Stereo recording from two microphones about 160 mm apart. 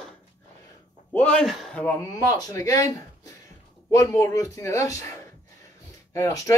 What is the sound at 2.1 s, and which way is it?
A man's voice, 25° left (ahead or behind).